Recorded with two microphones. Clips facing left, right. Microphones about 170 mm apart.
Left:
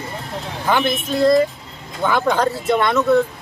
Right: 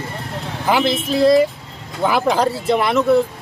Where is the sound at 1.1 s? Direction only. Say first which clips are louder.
Right 1 dB; 10° right (ahead or behind).